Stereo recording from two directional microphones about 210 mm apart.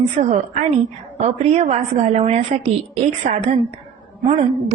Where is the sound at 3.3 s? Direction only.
40° right (ahead or behind).